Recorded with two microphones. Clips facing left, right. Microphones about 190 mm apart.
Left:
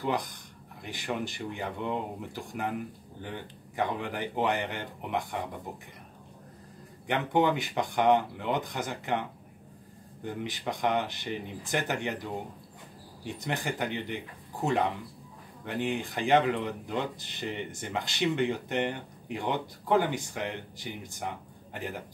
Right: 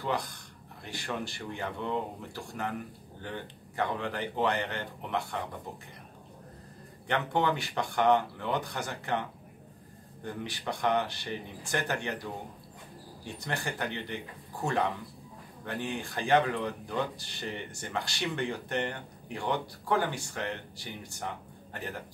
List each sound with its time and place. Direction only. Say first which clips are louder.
0.0 s speech: left 2 dB; 15° left (ahead or behind)
7.1 s speech: left 3 dB; 15° left (ahead or behind)
10.2 s speech: left 2 dB; 15° left (ahead or behind)
13.2 s speech: left 2 dB; 20° left (ahead or behind)